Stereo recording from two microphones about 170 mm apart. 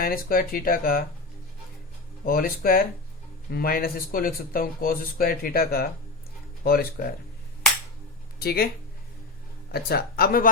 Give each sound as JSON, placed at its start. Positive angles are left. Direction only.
{"t": 0.0, "sound": "speech", "side_deg": 60}
{"t": 2.2, "sound": "speech", "side_deg": 60}
{"t": 8.4, "sound": "speech", "side_deg": 65}
{"t": 9.7, "sound": "speech", "side_deg": 65}